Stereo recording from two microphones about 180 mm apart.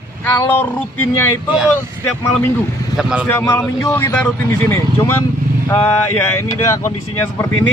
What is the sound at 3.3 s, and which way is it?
Speech, 10° left (ahead or behind).